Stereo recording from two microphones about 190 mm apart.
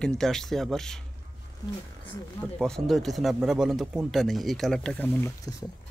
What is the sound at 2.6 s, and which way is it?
Speech, centre (ahead or behind).